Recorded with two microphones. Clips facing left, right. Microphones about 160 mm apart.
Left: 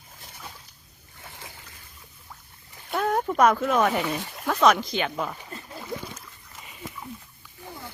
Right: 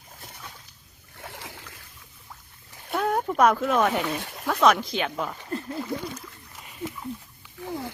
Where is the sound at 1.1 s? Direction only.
70° right (ahead or behind).